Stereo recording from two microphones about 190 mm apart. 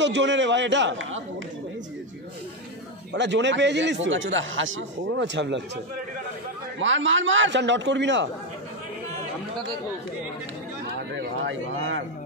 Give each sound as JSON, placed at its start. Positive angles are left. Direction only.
{"t": 0.0, "sound": "a man's voice", "side_deg": -70}
{"t": 3.1, "sound": "a man's voice", "side_deg": -70}
{"t": 6.8, "sound": "a man's voice", "side_deg": -85}
{"t": 11.0, "sound": "a man's voice", "side_deg": -70}